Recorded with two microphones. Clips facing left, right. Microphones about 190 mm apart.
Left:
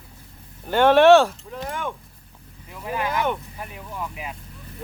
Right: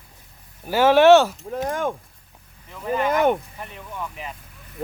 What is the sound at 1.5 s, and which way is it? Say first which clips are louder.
Speech: right 5 dB; 45° right (ahead or behind).